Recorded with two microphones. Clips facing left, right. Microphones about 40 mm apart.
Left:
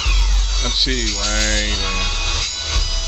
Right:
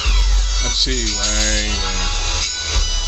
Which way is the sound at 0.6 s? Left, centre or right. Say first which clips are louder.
Left 1 dB; centre.